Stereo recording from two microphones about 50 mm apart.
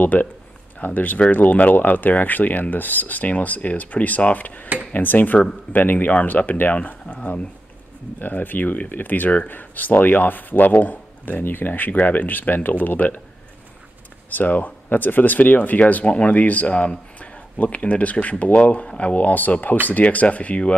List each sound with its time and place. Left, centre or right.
0.0 s speech: left
8.2 s speech: left
14.3 s speech: left